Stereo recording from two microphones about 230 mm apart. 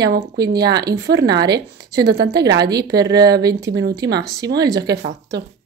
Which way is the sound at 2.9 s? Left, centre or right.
Centre.